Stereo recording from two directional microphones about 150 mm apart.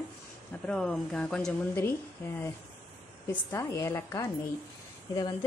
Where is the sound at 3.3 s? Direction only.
20° left (ahead or behind).